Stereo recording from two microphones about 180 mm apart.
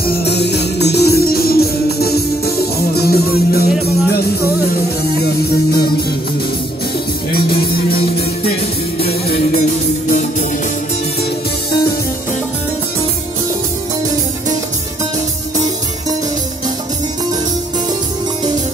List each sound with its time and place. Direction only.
0.0 s music: 70° left (ahead or behind)
5.2 s music: 60° left (ahead or behind)
7.3 s music: 60° left (ahead or behind)
9.0 s music: 60° left (ahead or behind)
9.6 s music: 40° left (ahead or behind)